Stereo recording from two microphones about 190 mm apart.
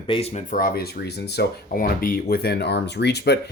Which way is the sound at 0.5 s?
50° left (ahead or behind).